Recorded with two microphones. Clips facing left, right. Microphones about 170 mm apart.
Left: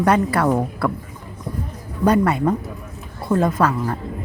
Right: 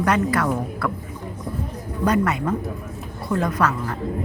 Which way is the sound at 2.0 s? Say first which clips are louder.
Left 4 dB; 30° left (ahead or behind).